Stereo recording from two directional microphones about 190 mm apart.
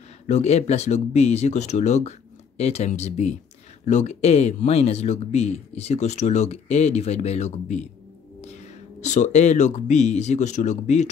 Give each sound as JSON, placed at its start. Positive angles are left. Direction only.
{"t": 0.3, "sound": "speech", "side_deg": 35}